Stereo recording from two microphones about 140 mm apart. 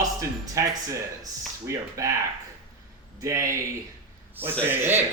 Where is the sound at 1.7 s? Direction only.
20° right (ahead or behind).